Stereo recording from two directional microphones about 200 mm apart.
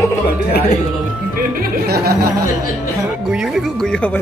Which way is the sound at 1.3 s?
50° right (ahead or behind).